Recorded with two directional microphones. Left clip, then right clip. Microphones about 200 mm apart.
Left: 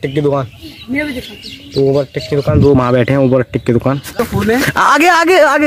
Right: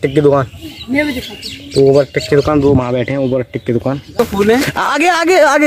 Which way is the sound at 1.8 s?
Centre (ahead or behind).